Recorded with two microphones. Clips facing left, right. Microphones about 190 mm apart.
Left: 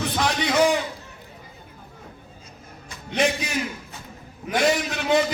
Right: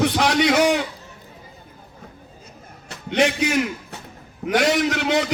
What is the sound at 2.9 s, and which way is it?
A man's voice, 70° right (ahead or behind).